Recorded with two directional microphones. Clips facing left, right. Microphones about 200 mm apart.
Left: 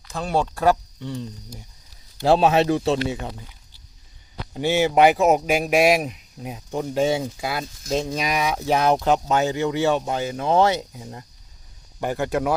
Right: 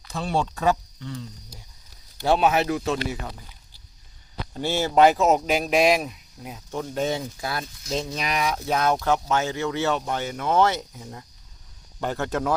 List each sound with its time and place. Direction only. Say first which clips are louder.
0.1 s speech: left 2 dB; centre (ahead or behind)
2.2 s speech: left 4 dB; 30° left (ahead or behind)
4.5 s speech: left 3 dB; 15° left (ahead or behind)
10.3 s speech: left 4 dB; 30° left (ahead or behind)
10.6 s speech: left 2 dB; 10° left (ahead or behind)